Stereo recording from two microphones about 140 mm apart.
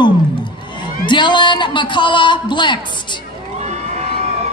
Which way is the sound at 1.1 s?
35° left (ahead or behind).